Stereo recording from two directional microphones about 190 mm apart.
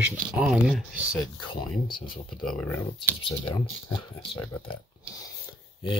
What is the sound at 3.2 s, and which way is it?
Speech, 30° left (ahead or behind).